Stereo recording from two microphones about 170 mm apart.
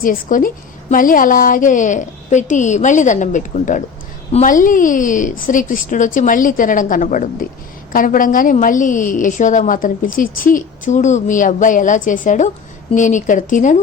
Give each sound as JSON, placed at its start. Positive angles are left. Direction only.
{"t": 0.0, "sound": "a woman's voice", "side_deg": 55}